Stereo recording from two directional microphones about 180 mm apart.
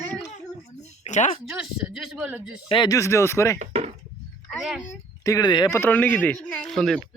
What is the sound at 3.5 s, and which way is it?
Chop, 35° right (ahead or behind).